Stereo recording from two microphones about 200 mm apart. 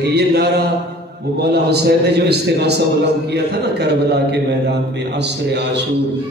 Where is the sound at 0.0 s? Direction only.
55° right (ahead or behind).